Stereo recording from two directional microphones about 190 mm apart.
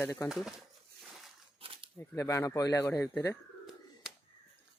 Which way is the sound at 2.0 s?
15° left (ahead or behind).